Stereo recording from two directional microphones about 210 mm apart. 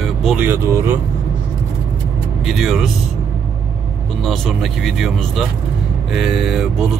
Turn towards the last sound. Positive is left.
turn(degrees=0)  # may be behind; listen again after turning